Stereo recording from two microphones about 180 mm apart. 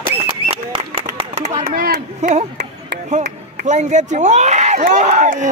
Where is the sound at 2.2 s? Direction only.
40° right (ahead or behind).